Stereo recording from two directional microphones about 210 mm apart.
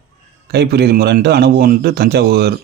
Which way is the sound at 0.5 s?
50° right (ahead or behind).